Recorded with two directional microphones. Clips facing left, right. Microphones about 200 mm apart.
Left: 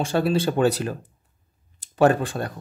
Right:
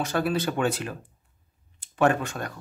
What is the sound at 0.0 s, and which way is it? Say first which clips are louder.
Speech: left 4 dB; 30° left (ahead or behind).